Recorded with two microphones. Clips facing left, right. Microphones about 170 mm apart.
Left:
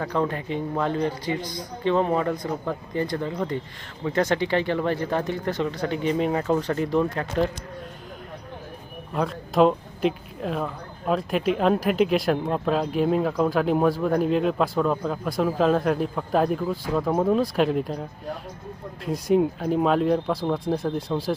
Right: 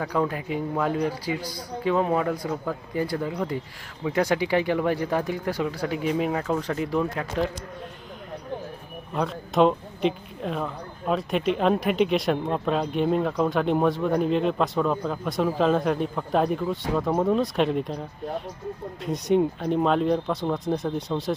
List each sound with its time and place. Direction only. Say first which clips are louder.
0.0 s a man's voice: even; 5° right (ahead or behind)
9.1 s speech: left 1 dB; centre (ahead or behind)
19.0 s speech: left 1 dB; centre (ahead or behind)